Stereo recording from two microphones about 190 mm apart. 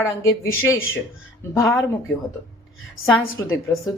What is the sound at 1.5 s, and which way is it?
Speech, 15° left (ahead or behind).